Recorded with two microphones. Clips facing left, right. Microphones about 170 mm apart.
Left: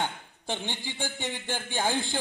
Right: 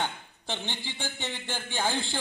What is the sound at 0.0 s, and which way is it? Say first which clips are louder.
A man's voice: left 1 dB; 10° left (ahead or behind).